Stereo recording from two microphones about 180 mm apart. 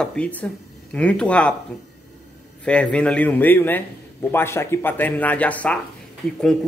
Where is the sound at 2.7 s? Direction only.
5° left (ahead or behind).